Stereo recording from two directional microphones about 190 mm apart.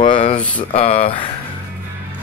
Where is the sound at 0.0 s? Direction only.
30° left (ahead or behind).